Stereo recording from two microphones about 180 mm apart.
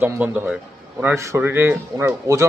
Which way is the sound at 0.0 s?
10° right (ahead or behind).